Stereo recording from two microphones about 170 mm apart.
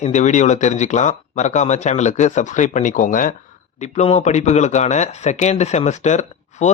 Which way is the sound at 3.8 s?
40° left (ahead or behind).